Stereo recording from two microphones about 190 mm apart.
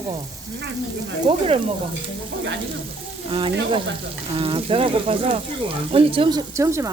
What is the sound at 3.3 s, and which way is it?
Speech, 25° right (ahead or behind).